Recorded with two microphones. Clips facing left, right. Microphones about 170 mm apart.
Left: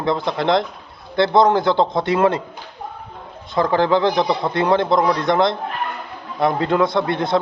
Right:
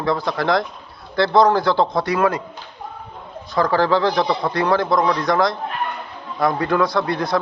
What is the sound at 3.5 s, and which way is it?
A man's voice, 20° left (ahead or behind).